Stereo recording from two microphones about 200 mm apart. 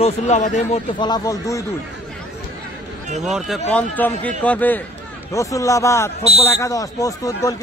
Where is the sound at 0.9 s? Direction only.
20° left (ahead or behind).